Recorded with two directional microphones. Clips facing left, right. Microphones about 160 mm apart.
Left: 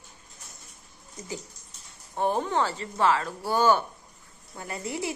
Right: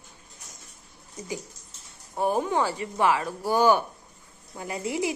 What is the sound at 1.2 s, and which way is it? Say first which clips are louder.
Speech: right 3 dB; 10° right (ahead or behind).